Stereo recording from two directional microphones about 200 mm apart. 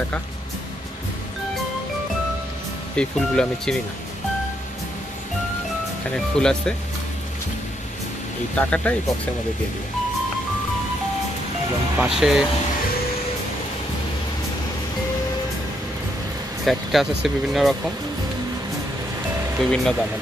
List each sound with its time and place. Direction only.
3.0 s speech: 5° left (ahead or behind)
6.1 s speech: 5° left (ahead or behind)
8.5 s speech: 5° left (ahead or behind)
12.0 s speech: 5° right (ahead or behind)
16.6 s speech: centre (ahead or behind)
19.6 s speech: centre (ahead or behind)